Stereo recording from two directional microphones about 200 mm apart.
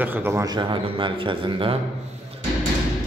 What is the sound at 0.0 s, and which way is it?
A man's voice, 10° right (ahead or behind).